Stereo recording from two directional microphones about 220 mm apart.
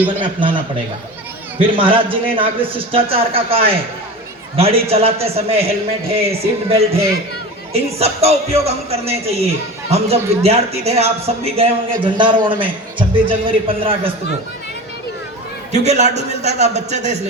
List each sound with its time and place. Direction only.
0.3 s speech: 20° right (ahead or behind)
15.7 s a man's voice: 30° right (ahead or behind)